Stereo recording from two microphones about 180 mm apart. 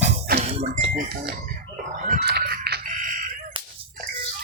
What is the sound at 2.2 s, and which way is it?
Music, 65° right (ahead or behind).